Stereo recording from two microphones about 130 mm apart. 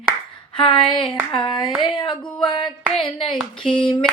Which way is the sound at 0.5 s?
40° left (ahead or behind).